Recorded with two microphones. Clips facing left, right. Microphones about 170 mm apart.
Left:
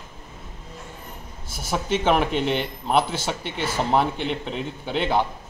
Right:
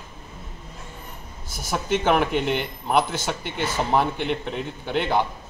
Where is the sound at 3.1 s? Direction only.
30° left (ahead or behind).